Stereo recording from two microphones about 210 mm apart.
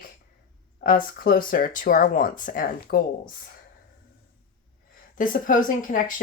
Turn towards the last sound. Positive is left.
turn(degrees=40)  # may be behind; listen again after turning